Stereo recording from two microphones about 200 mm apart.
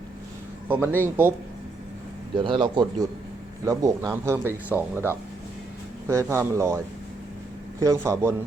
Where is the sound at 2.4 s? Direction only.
25° right (ahead or behind).